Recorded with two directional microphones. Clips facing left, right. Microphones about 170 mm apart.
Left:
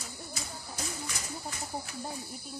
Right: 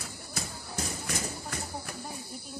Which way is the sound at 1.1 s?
55° right (ahead or behind).